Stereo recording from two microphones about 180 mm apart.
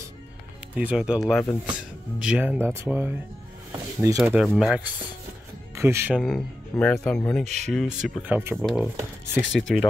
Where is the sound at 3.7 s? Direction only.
20° right (ahead or behind).